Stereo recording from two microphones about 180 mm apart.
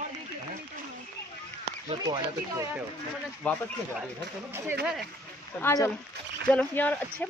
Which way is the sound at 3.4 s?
10° left (ahead or behind).